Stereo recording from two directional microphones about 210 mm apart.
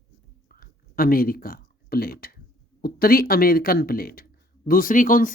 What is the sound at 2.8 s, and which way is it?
Speech, 45° left (ahead or behind).